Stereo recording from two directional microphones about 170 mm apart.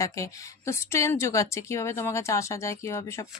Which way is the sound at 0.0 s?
15° left (ahead or behind).